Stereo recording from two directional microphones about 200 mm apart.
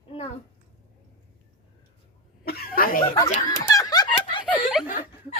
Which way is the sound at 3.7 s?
20° left (ahead or behind).